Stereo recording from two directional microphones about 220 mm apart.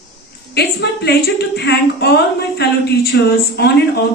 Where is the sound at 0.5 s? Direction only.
50° left (ahead or behind).